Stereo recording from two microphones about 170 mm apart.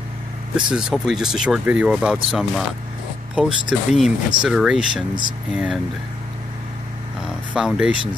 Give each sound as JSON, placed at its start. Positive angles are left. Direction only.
{"t": 0.6, "sound": "speech", "side_deg": -5}
{"t": 7.5, "sound": "speech", "side_deg": -5}